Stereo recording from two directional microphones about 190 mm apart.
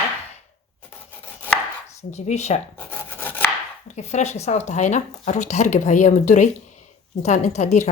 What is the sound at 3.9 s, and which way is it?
Speech, 35° left (ahead or behind).